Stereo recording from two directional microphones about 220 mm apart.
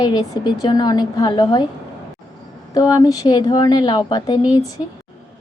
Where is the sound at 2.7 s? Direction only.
15° left (ahead or behind).